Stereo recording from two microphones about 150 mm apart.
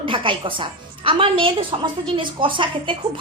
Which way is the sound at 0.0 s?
35° right (ahead or behind).